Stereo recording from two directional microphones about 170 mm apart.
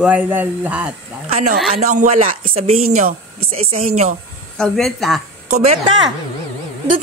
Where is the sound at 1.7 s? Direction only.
45° right (ahead or behind).